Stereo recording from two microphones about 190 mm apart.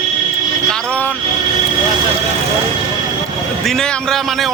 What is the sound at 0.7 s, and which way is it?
Vehicle, 5° left (ahead or behind).